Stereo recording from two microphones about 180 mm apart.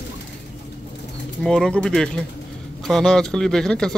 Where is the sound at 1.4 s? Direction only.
5° left (ahead or behind).